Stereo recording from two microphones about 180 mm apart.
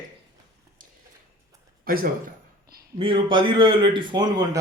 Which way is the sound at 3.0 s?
30° right (ahead or behind).